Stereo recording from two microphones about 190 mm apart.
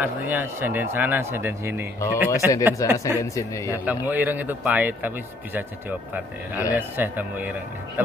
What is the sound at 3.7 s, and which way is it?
Speech, 10° right (ahead or behind).